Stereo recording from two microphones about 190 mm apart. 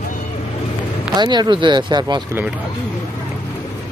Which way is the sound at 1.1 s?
25° right (ahead or behind).